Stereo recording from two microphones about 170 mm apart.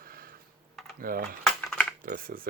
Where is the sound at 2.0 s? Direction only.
60° right (ahead or behind).